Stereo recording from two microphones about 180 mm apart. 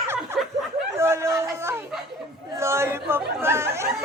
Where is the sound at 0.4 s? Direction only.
Centre (ahead or behind).